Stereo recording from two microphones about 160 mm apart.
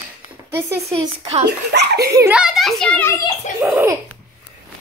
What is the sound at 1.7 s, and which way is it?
Speech, 90° right.